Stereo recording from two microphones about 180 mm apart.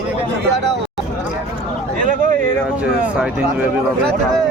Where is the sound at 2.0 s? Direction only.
45° right (ahead or behind).